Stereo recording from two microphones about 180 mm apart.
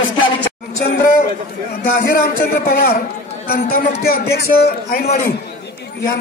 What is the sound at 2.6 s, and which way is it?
Speech, 55° left (ahead or behind).